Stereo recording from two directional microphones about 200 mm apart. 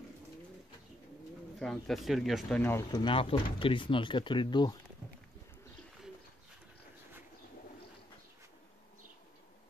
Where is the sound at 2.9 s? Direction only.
25° left (ahead or behind).